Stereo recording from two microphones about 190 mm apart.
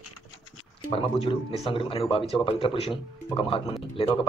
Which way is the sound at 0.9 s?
30° left (ahead or behind).